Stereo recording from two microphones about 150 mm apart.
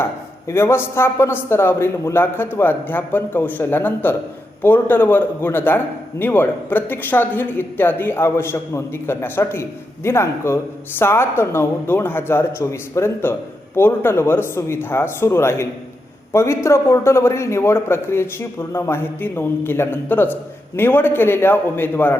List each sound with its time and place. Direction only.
0.0 s a man's voice: 15° left (ahead or behind)